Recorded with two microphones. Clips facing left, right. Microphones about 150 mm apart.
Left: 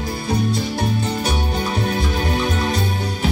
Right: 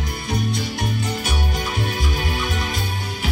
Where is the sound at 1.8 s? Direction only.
40° left (ahead or behind).